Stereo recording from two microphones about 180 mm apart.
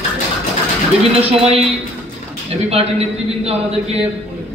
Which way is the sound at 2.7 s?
35° right (ahead or behind).